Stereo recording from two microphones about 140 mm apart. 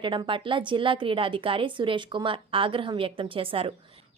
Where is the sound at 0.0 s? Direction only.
35° right (ahead or behind).